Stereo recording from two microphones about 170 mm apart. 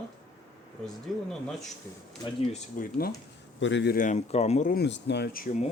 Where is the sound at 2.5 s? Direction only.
55° left (ahead or behind).